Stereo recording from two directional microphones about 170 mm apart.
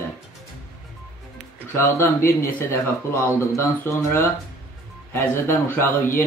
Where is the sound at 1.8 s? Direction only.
15° left (ahead or behind).